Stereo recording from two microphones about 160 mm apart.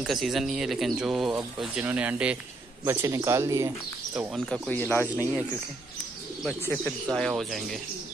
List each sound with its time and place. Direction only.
0.0 s speech: centre (ahead or behind); by 3.7 s 20° right (ahead or behind)
4.5 s speech: 10° left (ahead or behind)
6.6 s speech: 10° left (ahead or behind)